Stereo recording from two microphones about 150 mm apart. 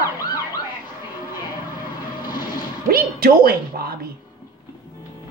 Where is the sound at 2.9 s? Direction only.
85° right.